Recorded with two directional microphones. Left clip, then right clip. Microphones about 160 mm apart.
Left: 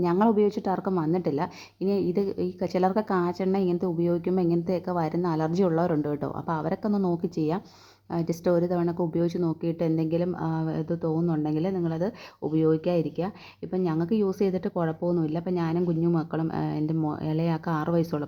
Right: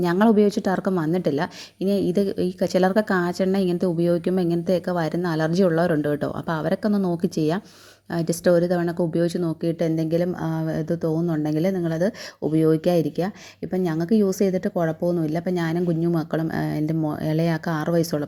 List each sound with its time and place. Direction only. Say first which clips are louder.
0.0 s a woman's voice: right 4 dB; 25° right (ahead or behind)